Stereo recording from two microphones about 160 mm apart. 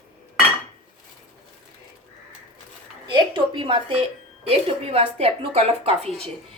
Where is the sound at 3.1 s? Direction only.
30° right (ahead or behind).